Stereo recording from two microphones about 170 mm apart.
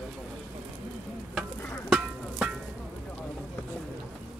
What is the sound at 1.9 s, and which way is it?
Music, 5° right (ahead or behind).